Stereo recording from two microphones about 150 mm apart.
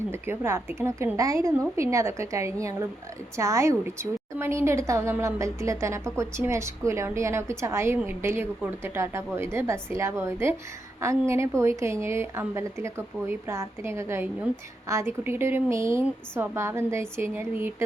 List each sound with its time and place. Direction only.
0.1 s a woman's voice: 15° right (ahead or behind)